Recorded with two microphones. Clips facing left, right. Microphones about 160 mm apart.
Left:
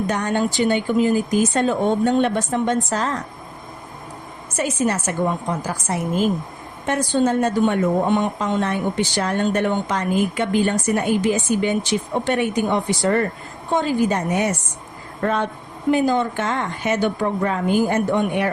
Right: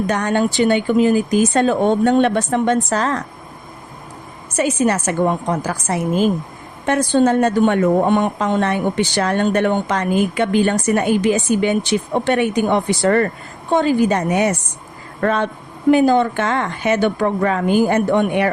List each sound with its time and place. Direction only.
0.1 s a woman's voice: 75° right (ahead or behind)
4.5 s a woman's voice: 80° right
15.9 s a woman's voice: 65° right (ahead or behind)